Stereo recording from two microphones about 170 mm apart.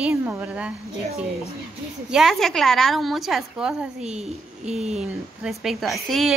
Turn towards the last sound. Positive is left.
turn(degrees=0)  # may be behind; listen again after turning